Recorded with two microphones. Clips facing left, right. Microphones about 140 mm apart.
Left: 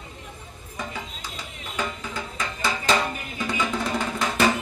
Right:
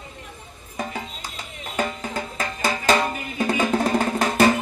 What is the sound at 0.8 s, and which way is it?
Music, 45° right (ahead or behind).